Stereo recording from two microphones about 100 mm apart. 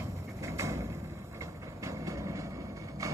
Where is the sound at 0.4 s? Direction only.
30° right (ahead or behind).